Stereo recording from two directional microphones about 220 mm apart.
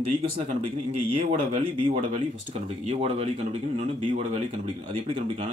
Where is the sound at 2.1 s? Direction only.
30° right (ahead or behind).